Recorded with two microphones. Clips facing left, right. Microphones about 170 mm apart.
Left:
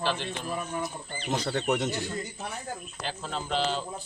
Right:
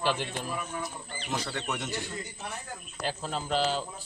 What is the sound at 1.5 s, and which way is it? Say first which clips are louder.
Speech: left 7 dB; 40° left (ahead or behind).